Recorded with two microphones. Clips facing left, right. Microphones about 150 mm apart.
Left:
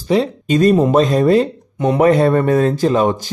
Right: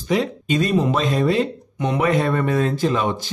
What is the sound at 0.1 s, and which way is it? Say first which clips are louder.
Speech: left 5 dB; 35° left (ahead or behind).